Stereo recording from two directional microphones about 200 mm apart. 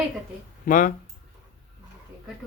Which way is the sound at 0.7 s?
40° left (ahead or behind).